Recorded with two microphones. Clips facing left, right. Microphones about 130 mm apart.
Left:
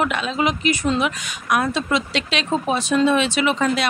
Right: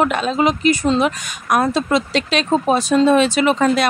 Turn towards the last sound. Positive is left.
turn(degrees=-45)  # may be behind; listen again after turning